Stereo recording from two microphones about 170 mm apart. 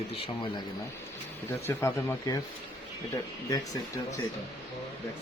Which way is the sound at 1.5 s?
15° left (ahead or behind).